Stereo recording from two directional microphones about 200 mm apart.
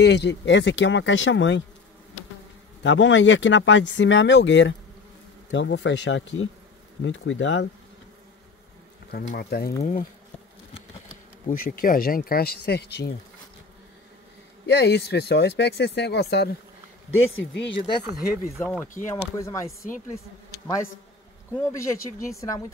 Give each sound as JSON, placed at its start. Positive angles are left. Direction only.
{"t": 0.0, "sound": "speech", "side_deg": 60}
{"t": 2.8, "sound": "speech", "side_deg": 65}
{"t": 9.4, "sound": "speech", "side_deg": 50}
{"t": 11.4, "sound": "speech", "side_deg": 45}
{"t": 14.7, "sound": "speech", "side_deg": 55}
{"t": 17.1, "sound": "speech", "side_deg": 70}
{"t": 18.4, "sound": "speech", "side_deg": 10}
{"t": 21.5, "sound": "speech", "side_deg": 15}